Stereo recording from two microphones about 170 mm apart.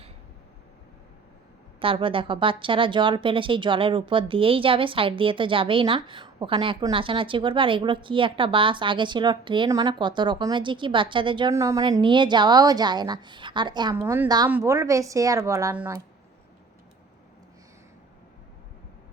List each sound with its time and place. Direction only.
1.8 s speech: 30° right (ahead or behind)
11.5 s a woman's voice: 20° right (ahead or behind)
13.9 s a woman's voice: 15° right (ahead or behind)
14.3 s a woman's voice: 25° right (ahead or behind)